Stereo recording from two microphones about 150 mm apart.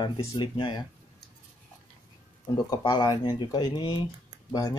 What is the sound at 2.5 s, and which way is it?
Speech, 30° left (ahead or behind).